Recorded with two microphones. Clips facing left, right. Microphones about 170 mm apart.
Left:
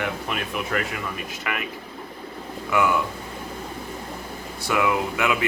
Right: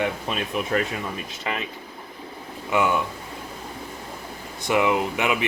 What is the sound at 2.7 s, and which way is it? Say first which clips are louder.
Speech: even; 20° right (ahead or behind).